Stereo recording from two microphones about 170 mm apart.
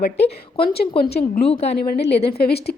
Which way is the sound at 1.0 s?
70° left (ahead or behind).